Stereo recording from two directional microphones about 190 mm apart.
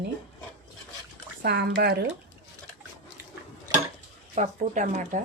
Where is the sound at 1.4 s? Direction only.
55° right (ahead or behind).